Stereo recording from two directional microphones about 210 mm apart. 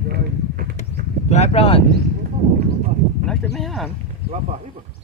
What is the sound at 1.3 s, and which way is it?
Speech, 30° left (ahead or behind).